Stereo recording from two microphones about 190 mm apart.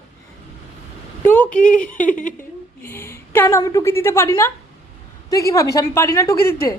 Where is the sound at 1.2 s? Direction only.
5° left (ahead or behind).